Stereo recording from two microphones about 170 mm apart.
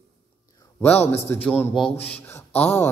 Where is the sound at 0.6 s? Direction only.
10° left (ahead or behind).